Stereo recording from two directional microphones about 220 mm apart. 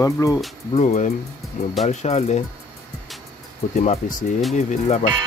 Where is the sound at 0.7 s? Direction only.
35° left (ahead or behind).